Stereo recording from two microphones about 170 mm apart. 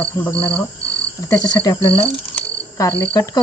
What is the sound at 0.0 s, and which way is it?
Speech, 10° left (ahead or behind).